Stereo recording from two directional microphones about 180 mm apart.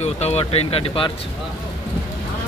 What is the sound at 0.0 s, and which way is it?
Speech, 35° left (ahead or behind).